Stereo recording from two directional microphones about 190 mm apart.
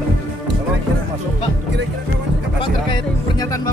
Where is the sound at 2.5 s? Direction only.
25° left (ahead or behind).